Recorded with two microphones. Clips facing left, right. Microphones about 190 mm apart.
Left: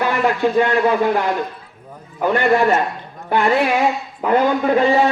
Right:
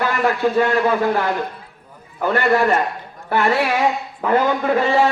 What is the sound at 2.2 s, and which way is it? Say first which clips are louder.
Brass instrument: left 1 dB; 15° left (ahead or behind).